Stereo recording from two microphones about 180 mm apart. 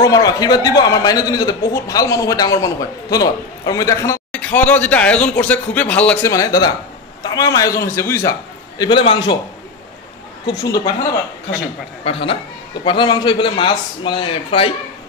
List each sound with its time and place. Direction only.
0.0 s a man's voice: 20° left (ahead or behind)
6.3 s a man's voice: 20° left (ahead or behind)
10.4 s a man's voice: 25° left (ahead or behind)
12.0 s a man's voice: 30° left (ahead or behind)